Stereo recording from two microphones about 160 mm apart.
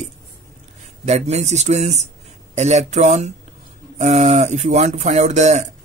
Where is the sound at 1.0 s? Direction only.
45° right (ahead or behind).